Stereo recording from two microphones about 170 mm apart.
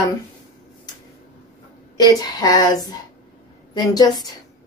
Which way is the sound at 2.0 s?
25° left (ahead or behind).